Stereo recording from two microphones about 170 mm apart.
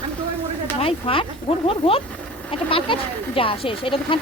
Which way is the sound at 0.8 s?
35° left (ahead or behind).